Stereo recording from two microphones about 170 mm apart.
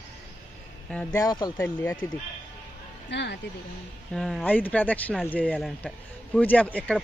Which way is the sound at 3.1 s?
90° left.